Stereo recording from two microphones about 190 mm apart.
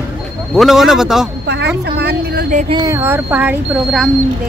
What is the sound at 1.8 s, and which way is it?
Speech, 55° right (ahead or behind).